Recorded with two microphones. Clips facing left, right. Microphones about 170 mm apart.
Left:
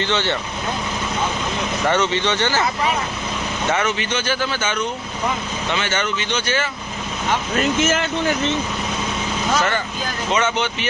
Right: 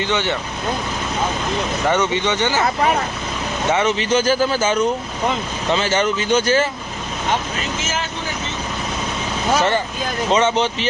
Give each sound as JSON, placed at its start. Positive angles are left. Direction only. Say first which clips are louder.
{"t": 1.9, "sound": "speech", "louder": "right 1 dB", "side_deg": -15}
{"t": 3.8, "sound": "speech", "louder": "right 6 dB", "side_deg": -35}
{"t": 7.8, "sound": "speech", "louder": "left 6 dB", "side_deg": 60}
{"t": 9.6, "sound": "speech", "louder": "right 3 dB", "side_deg": -30}